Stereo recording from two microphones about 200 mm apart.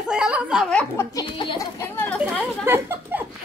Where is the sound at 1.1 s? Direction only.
25° left (ahead or behind).